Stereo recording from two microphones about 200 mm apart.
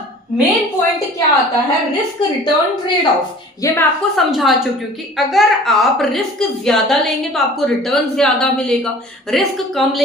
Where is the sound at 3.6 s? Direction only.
15° left (ahead or behind).